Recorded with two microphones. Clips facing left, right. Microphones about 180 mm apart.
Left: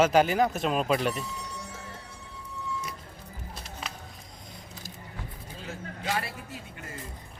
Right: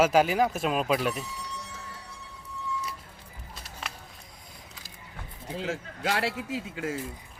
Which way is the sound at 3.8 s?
Centre (ahead or behind).